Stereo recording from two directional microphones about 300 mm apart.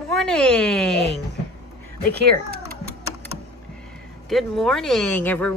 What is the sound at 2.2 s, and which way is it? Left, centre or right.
Typing, right.